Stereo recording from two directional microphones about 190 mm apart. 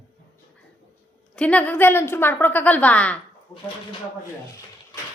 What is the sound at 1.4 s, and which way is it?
A woman's voice, 5° left (ahead or behind).